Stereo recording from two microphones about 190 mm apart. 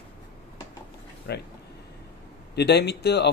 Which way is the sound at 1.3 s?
60° left (ahead or behind).